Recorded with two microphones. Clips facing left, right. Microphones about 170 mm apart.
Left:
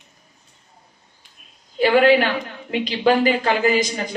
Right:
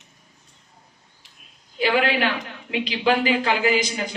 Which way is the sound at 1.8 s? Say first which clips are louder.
Left 6 dB; 40° left (ahead or behind).